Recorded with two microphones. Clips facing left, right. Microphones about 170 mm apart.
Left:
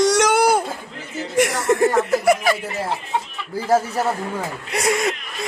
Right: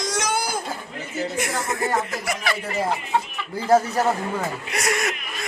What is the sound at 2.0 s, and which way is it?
Speech, 55° left (ahead or behind).